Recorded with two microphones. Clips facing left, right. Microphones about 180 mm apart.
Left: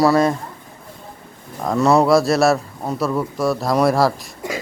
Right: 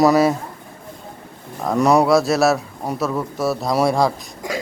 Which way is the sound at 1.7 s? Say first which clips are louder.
Even; 15° right (ahead or behind).